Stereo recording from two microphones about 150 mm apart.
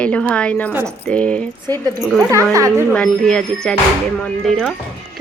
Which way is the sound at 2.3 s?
20° right (ahead or behind).